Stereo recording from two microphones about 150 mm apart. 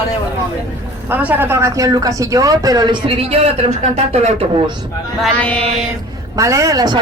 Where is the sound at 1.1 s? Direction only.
10° right (ahead or behind); by 4.7 s 40° right (ahead or behind).